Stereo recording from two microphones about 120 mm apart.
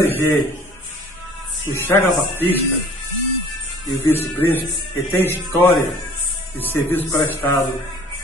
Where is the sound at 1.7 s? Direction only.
20° left (ahead or behind).